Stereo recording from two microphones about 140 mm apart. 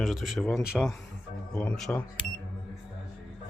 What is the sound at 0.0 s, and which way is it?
Speech, centre (ahead or behind).